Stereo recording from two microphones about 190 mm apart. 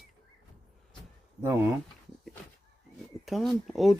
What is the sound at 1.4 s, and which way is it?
Speech, 15° right (ahead or behind).